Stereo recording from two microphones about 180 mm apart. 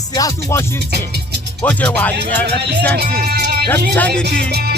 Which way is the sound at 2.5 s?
65° right (ahead or behind).